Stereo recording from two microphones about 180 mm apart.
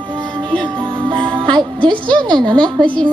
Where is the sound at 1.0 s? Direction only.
25° right (ahead or behind).